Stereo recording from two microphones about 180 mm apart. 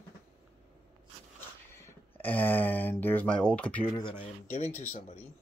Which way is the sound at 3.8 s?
25° left (ahead or behind).